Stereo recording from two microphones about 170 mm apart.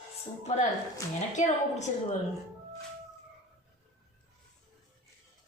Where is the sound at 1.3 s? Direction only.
45° left (ahead or behind).